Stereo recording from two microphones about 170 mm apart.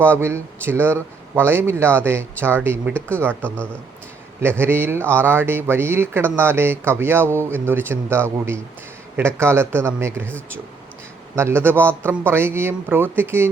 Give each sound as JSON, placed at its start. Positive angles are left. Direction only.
{"t": 0.2, "sound": "speech", "side_deg": -15}
{"t": 11.3, "sound": "speech", "side_deg": -15}